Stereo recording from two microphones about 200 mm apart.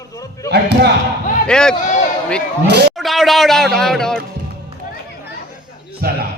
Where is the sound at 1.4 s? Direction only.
5° left (ahead or behind).